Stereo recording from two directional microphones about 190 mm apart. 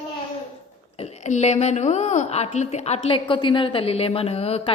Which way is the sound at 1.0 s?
35° left (ahead or behind).